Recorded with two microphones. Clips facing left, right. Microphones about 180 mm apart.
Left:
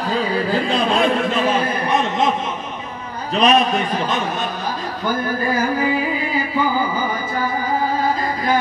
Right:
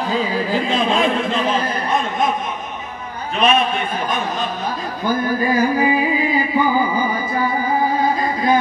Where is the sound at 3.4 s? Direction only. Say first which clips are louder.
Left 2 dB; 40° left (ahead or behind).